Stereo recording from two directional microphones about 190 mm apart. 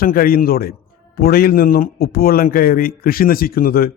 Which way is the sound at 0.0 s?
50° left (ahead or behind).